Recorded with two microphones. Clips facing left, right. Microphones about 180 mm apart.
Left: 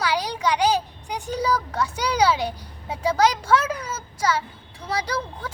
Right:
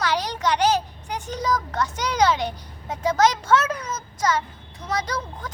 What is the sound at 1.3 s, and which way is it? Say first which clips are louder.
A child's voice: left 1 dB; 10° left (ahead or behind).